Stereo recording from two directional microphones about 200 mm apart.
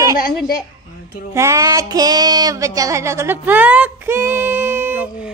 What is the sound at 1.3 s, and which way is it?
Speech, 15° right (ahead or behind).